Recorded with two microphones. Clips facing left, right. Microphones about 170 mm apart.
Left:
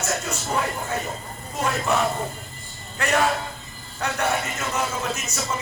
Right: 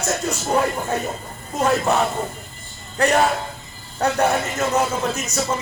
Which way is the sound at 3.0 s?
35° right (ahead or behind).